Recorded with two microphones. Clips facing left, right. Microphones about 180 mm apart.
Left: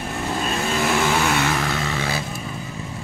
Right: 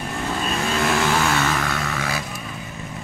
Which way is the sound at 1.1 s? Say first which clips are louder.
Even; 5° left (ahead or behind).